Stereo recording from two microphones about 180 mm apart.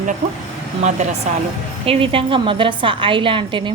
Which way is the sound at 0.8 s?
40° right (ahead or behind).